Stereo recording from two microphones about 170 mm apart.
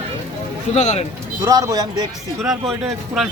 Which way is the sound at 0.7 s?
40° left (ahead or behind).